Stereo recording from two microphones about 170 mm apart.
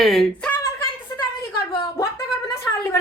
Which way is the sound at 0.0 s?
Centre (ahead or behind).